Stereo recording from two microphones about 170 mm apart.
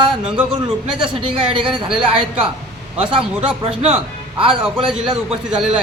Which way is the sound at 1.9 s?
5° right (ahead or behind).